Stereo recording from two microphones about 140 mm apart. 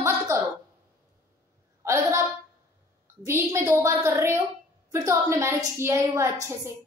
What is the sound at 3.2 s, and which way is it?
A woman's voice, 20° right (ahead or behind).